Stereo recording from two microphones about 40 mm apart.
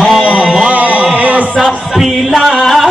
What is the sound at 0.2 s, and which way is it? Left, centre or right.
Music, right.